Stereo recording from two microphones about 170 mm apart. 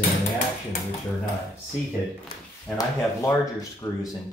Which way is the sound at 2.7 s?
20° left (ahead or behind).